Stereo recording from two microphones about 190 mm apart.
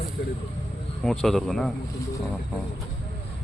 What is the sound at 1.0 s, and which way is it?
Speech, centre (ahead or behind).